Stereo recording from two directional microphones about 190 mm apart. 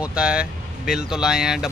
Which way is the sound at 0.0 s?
5° right (ahead or behind).